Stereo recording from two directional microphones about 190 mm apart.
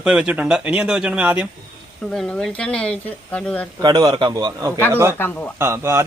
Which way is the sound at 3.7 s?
20° right (ahead or behind).